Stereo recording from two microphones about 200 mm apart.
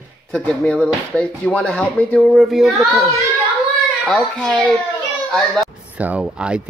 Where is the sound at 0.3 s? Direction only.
5° left (ahead or behind).